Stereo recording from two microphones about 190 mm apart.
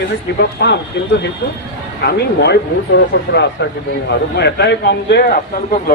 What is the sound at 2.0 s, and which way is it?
A man's voice, 60° left (ahead or behind).